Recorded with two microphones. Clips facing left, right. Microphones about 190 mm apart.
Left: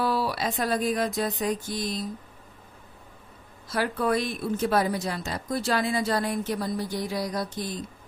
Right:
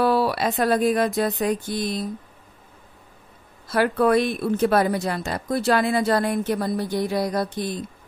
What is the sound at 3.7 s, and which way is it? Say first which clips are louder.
Speech: right 7 dB; 65° right (ahead or behind).